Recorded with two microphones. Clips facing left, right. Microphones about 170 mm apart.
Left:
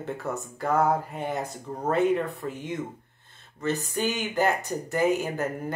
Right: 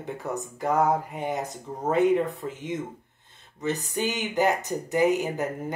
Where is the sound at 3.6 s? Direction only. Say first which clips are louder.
Even; 15° right (ahead or behind).